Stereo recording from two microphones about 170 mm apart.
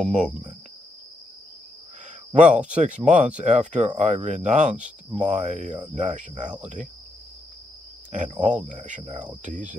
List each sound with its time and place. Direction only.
0.0 s speech: 40° right (ahead or behind)
2.3 s speech: 45° right (ahead or behind)
8.1 s speech: 45° right (ahead or behind)